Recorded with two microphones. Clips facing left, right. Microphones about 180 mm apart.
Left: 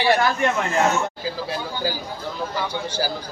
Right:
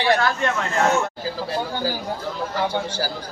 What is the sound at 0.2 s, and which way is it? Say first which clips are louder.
Speech: left 2 dB; 15° left (ahead or behind).